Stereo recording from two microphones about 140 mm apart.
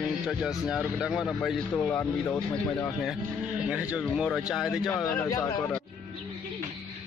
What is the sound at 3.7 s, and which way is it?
A man's voice, 10° right (ahead or behind).